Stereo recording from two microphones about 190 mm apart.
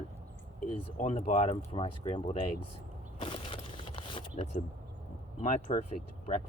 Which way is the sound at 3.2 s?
30° left (ahead or behind).